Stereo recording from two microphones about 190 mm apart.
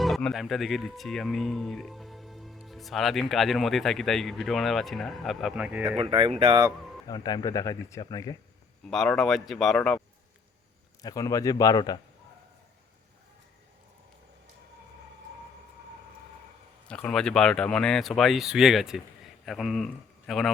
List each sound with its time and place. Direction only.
0.0 s speech: centre (ahead or behind)
6.0 s speech: 30° right (ahead or behind)
7.1 s speech: 20° left (ahead or behind)
8.9 s speech: centre (ahead or behind)
11.0 s speech: 15° left (ahead or behind)
16.9 s speech: 5° left (ahead or behind)